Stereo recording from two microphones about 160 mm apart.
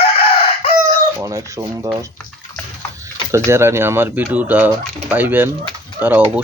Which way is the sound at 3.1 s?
15° right (ahead or behind).